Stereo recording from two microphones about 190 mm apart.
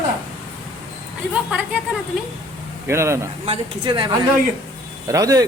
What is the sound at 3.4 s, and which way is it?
Speech, 30° right (ahead or behind).